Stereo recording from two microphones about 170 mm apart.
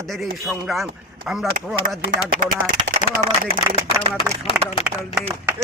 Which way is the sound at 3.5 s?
30° right (ahead or behind).